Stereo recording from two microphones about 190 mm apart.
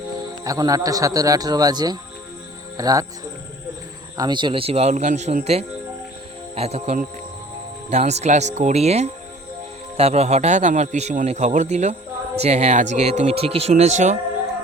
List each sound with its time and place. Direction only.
0.4 s speech: 20° right (ahead or behind)
4.2 s a man's voice: 25° right (ahead or behind)